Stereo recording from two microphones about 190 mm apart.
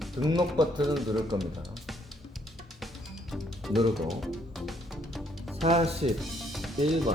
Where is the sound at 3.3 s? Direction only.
Centre (ahead or behind).